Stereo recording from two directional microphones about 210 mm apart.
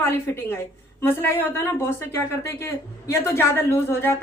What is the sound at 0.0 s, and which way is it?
A woman's voice, 10° left (ahead or behind).